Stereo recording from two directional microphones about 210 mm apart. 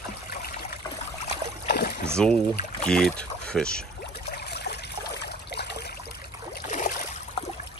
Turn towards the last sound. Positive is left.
turn(degrees=35)  # may be behind; listen again after turning